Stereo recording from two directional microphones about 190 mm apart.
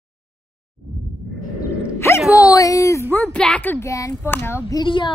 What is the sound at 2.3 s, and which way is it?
Speech, 20° left (ahead or behind).